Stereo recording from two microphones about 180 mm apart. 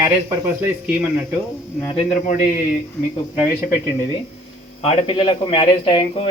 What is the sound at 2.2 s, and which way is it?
Speech, 45° left (ahead or behind).